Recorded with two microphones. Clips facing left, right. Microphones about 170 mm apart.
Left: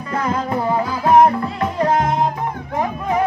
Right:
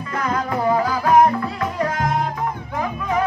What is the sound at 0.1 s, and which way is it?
Music, 30° left (ahead or behind).